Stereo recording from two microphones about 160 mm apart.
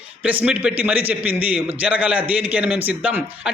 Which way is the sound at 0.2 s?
10° right (ahead or behind).